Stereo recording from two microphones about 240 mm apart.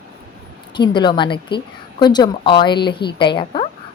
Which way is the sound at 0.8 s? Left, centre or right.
Centre.